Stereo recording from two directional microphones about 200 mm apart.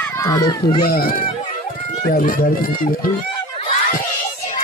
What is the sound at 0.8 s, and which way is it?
Speech, 45° left (ahead or behind).